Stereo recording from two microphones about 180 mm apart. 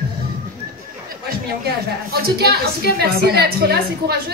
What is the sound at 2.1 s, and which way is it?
A woman's voice, 60° right (ahead or behind).